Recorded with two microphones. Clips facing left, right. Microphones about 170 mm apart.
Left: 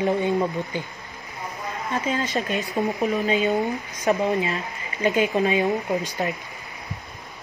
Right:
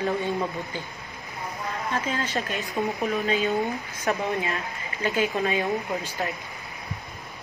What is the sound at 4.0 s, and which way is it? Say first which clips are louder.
Speech: left 5 dB; 20° left (ahead or behind).